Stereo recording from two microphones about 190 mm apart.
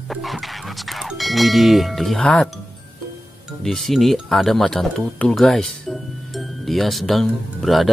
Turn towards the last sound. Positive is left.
turn(degrees=0)  # may be behind; listen again after turning